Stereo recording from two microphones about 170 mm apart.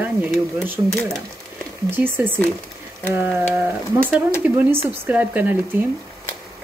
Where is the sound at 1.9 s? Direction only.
10° right (ahead or behind).